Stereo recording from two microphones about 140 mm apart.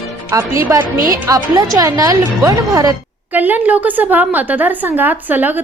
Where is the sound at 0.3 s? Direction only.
20° right (ahead or behind).